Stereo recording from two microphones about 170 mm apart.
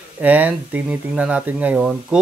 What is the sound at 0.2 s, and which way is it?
Speech, 10° right (ahead or behind).